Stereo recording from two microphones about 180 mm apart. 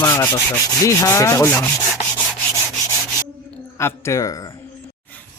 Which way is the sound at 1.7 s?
5° left (ahead or behind).